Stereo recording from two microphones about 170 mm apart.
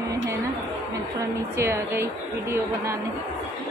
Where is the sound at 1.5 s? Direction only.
15° right (ahead or behind).